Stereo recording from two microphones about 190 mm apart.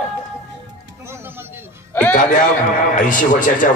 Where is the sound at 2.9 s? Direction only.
45° left (ahead or behind).